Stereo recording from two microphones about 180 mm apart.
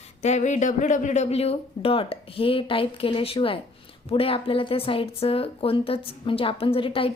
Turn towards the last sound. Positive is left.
turn(degrees=30)  # may be behind; listen again after turning